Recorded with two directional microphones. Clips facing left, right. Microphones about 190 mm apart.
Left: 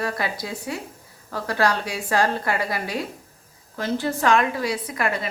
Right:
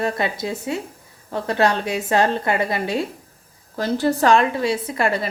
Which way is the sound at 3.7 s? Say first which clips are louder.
Right 5 dB; 40° right (ahead or behind).